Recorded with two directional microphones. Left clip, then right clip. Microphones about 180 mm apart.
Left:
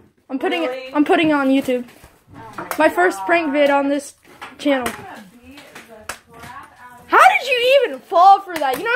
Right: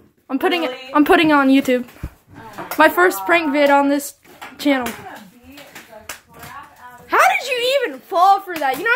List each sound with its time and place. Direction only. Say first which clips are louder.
0.3 s speech: right 2 dB; 25° right (ahead or behind)
2.8 s speech: right 2 dB; 15° right (ahead or behind)
7.1 s a sound: left 3 dB; 10° left (ahead or behind)